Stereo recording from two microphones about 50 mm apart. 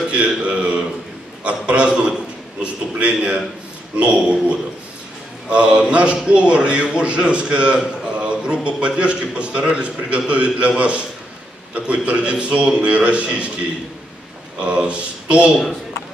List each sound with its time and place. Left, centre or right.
0.1 s a man's voice: right
11.7 s a man's voice: right
14.6 s a man's voice: right